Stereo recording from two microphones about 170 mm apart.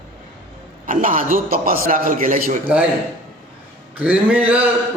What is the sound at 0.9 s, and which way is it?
A man's voice, 55° right (ahead or behind).